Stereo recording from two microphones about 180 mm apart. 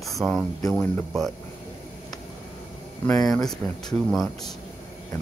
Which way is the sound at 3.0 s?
5° left (ahead or behind).